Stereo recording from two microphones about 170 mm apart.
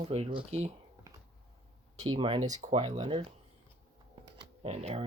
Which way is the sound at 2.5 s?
45° right (ahead or behind).